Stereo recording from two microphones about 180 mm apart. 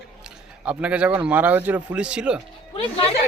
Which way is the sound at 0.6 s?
5° right (ahead or behind).